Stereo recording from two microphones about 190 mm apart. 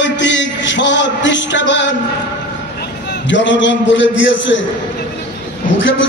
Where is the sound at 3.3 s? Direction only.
75° left (ahead or behind).